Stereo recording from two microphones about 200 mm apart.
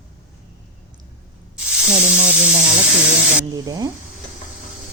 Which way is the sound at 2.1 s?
35° right (ahead or behind).